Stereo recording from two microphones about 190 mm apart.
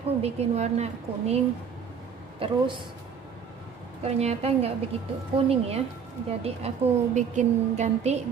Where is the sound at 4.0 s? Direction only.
35° right (ahead or behind).